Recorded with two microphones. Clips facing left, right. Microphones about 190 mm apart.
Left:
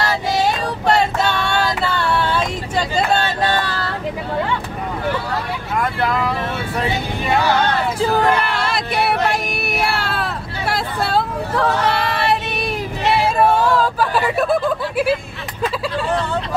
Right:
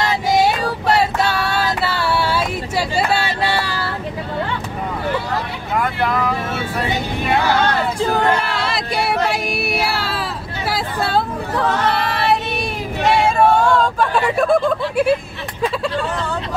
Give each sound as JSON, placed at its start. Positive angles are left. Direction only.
{"t": 0.8, "sound": "female singing", "side_deg": -5}
{"t": 8.0, "sound": "female singing", "side_deg": 0}
{"t": 13.0, "sound": "a sound", "side_deg": 5}